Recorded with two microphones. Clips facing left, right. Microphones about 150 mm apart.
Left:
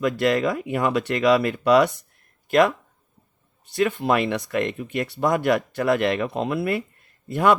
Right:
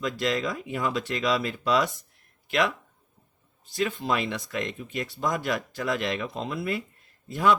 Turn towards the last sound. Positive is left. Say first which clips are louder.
# left 4 dB
turn(degrees=60)  # may be behind; listen again after turning